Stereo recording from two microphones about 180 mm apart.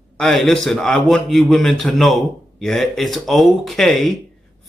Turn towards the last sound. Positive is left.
turn(degrees=0)  # may be behind; listen again after turning